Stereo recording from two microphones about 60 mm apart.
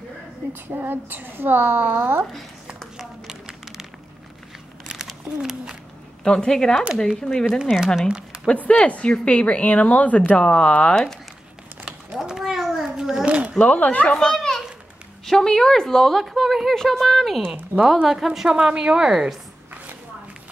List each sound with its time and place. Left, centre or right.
0.5 s a woman's voice: right
3.0 s a sound: centre
4.8 s a sound: centre
6.2 s speech: centre
7.4 s a woman's voice: centre
8.1 s a sound: centre
8.5 s speech: centre
12.3 s a sound: centre
13.6 s speech: left
14.1 s children playing: centre
15.2 s a woman's voice: centre
17.7 s speech: right
18.0 s a woman's voice: centre